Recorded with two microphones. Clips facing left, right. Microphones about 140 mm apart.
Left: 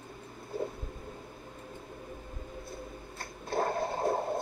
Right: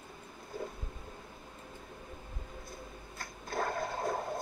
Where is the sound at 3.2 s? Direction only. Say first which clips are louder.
Left 4 dB; 30° left (ahead or behind).